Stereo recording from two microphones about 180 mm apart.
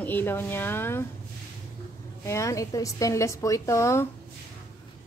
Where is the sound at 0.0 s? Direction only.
10° left (ahead or behind).